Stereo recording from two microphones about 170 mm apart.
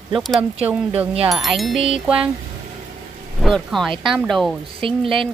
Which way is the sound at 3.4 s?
Centre (ahead or behind).